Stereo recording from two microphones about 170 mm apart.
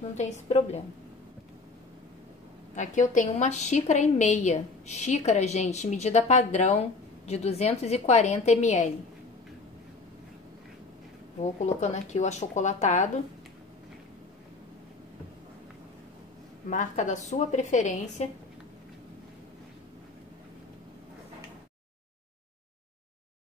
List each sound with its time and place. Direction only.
0.2 s a woman's voice: 40° left (ahead or behind)
2.7 s a woman's voice: 45° left (ahead or behind)
11.6 s a woman's voice: 40° left (ahead or behind)
16.6 s a woman's voice: 45° left (ahead or behind)